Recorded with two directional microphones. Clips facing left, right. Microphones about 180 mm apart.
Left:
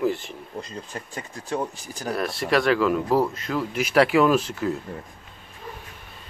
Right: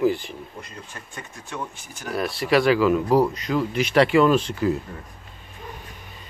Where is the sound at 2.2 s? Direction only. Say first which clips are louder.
Right 3 dB; centre (ahead or behind).